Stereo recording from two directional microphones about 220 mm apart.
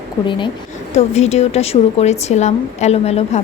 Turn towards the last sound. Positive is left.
turn(degrees=30)  # may be behind; listen again after turning